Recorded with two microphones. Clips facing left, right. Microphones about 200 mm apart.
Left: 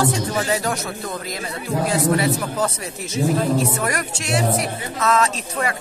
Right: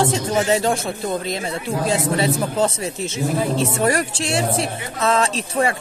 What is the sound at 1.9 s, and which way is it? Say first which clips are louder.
A woman's voice: even; 25° right (ahead or behind).